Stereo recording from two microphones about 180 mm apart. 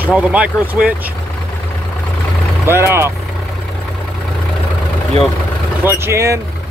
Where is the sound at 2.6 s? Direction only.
15° right (ahead or behind).